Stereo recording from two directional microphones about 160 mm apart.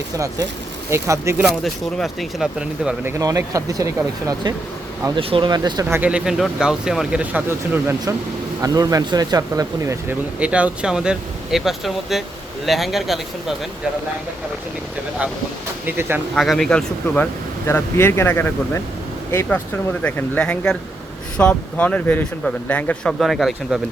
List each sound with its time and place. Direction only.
0.9 s speech: 15° right (ahead or behind)
1.5 s speech: centre (ahead or behind)
8.6 s speech: 25° right (ahead or behind)
10.4 s speech: 5° right (ahead or behind)
15.9 s speech: 15° right (ahead or behind)
16.3 s speech: centre (ahead or behind)